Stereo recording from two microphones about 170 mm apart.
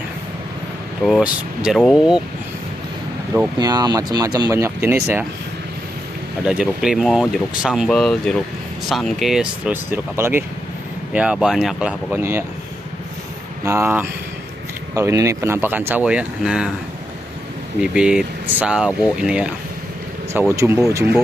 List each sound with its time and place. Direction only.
1.0 s speech: 5° right (ahead or behind)
3.5 s speech: 25° right (ahead or behind)
6.4 s speech: 5° right (ahead or behind)
13.7 s speech: 15° right (ahead or behind)
17.7 s speech: 5° right (ahead or behind)